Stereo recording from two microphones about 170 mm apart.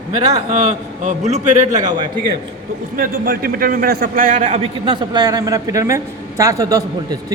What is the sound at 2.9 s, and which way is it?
A man's voice, 60° right (ahead or behind).